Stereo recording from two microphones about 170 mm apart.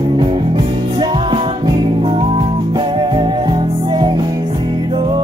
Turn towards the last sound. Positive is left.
turn(degrees=-30)  # may be behind; listen again after turning